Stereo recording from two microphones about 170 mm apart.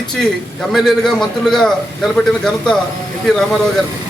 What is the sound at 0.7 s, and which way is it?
A man's voice, centre (ahead or behind).